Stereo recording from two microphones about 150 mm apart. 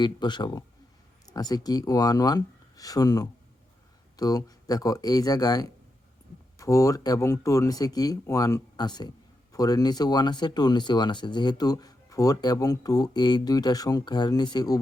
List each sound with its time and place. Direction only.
0.0 s speech: 30° left (ahead or behind)